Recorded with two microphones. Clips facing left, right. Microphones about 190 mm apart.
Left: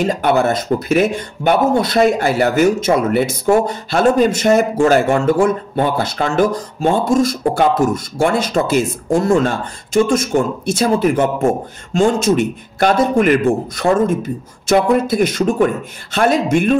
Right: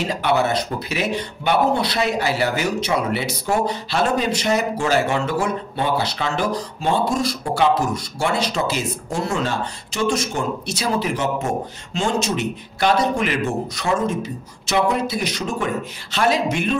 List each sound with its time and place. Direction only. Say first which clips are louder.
0.0 s speech: left 5 dB; 50° left (ahead or behind)